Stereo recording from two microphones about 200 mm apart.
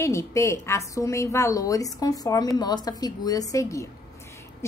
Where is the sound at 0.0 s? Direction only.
15° left (ahead or behind).